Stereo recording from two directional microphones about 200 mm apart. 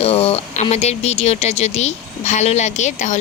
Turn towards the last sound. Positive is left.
turn(degrees=35)  # may be behind; listen again after turning